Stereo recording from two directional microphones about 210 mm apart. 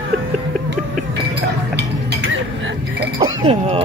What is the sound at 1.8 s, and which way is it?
Dishes, 60° right (ahead or behind).